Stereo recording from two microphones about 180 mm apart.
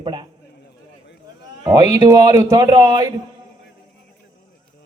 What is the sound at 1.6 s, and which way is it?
A man's voice, 20° right (ahead or behind).